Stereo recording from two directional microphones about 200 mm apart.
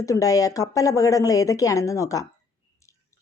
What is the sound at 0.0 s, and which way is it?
A woman's voice, 15° left (ahead or behind).